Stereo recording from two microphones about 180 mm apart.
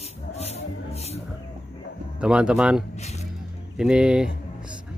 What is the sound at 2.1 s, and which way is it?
Speech, 5° right (ahead or behind).